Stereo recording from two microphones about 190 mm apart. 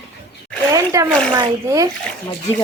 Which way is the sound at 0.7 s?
15° right (ahead or behind).